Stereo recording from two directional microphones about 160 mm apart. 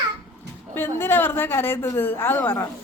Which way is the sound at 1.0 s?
15° left (ahead or behind).